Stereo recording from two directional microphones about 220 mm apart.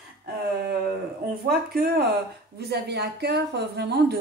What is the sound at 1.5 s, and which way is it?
A woman's voice, 45° right (ahead or behind).